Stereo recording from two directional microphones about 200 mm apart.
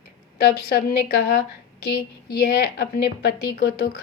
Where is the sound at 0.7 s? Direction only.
50° left (ahead or behind).